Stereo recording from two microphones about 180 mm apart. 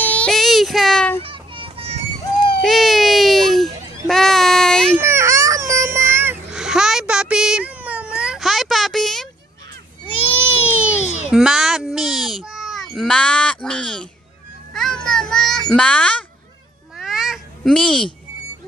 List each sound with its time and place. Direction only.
0.0 s child singing: 5° left (ahead or behind)
1.2 s children playing: 30° right (ahead or behind)
2.6 s baby cry: centre (ahead or behind)
4.1 s a sound: centre (ahead or behind)
5.0 s baby cry: 15° right (ahead or behind); by 9.3 s centre (ahead or behind)
10.6 s baby cry: 40° left (ahead or behind)
11.2 s a sound: 5° right (ahead or behind)
16.9 s cat: centre (ahead or behind)